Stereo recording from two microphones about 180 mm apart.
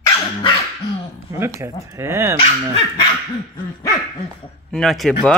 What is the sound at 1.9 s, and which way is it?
Speech, 15° right (ahead or behind).